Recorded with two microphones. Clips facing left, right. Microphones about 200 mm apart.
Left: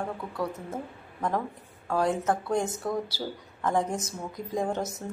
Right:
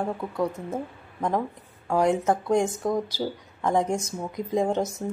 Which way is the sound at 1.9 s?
20° right (ahead or behind).